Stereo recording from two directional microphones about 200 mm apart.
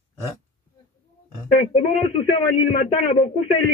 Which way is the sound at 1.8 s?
25° left (ahead or behind).